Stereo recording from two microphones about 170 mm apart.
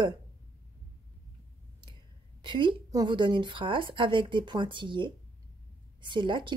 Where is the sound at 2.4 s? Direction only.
30° right (ahead or behind).